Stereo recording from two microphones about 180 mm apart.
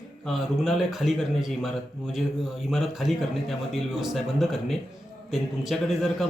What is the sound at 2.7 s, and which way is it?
A man's voice, centre (ahead or behind).